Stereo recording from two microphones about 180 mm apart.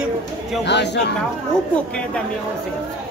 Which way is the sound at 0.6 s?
70° left (ahead or behind).